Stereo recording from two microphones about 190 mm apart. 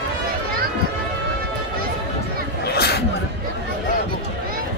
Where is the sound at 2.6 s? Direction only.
55° left (ahead or behind).